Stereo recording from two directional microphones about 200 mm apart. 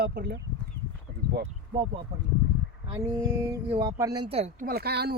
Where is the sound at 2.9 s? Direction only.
15° right (ahead or behind).